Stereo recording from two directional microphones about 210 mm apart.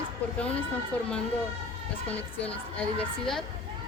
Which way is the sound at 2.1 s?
5° left (ahead or behind).